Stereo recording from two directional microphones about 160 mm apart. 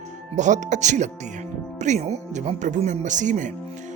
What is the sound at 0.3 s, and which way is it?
Speech, 50° right (ahead or behind).